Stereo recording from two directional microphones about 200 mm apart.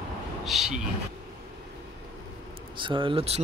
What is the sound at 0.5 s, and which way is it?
Speech, 5° right (ahead or behind).